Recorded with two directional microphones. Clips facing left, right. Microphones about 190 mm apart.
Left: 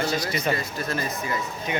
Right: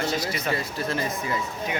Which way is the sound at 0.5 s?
30° right (ahead or behind).